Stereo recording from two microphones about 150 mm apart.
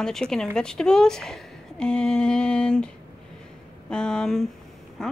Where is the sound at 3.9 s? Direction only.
5° left (ahead or behind).